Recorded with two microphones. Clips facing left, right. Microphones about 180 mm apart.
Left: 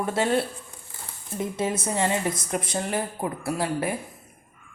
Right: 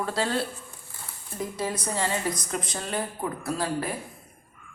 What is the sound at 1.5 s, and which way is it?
A woman's voice, 25° left (ahead or behind).